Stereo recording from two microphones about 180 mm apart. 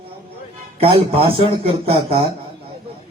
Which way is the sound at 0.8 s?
30° right (ahead or behind).